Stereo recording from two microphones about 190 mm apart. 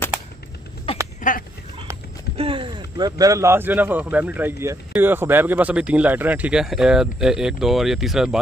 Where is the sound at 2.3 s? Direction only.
30° right (ahead or behind).